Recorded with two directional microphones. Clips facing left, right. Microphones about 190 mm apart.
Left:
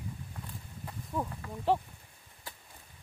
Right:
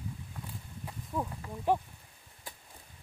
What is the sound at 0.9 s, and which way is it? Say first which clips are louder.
Speech: even; 10° right (ahead or behind).